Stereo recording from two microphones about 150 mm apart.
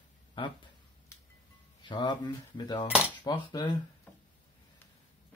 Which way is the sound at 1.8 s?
30° left (ahead or behind).